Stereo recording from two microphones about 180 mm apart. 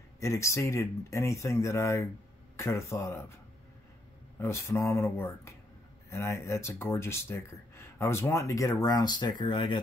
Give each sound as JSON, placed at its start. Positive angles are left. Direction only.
{"t": 0.2, "sound": "speech", "side_deg": 15}
{"t": 4.4, "sound": "speech", "side_deg": 15}